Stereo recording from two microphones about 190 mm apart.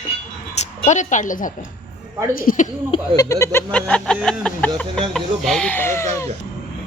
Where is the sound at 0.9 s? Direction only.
40° left (ahead or behind).